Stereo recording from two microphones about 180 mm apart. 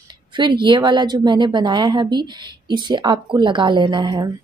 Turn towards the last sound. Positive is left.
turn(degrees=-25)  # may be behind; listen again after turning